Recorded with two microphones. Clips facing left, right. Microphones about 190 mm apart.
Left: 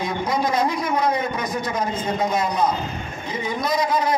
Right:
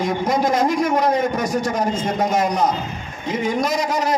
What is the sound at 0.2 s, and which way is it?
Speech, 45° right (ahead or behind).